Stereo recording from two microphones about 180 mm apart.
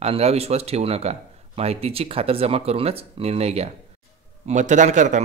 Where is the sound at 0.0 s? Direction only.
35° right (ahead or behind).